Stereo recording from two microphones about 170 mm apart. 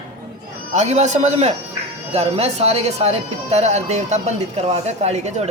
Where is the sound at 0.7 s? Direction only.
40° right (ahead or behind).